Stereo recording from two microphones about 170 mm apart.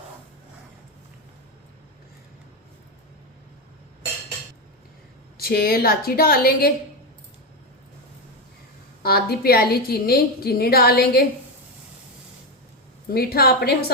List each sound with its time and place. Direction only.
5.4 s a woman's voice: 65° left (ahead or behind)
9.0 s a woman's voice: 65° left (ahead or behind)
13.1 s a woman's voice: 65° left (ahead or behind)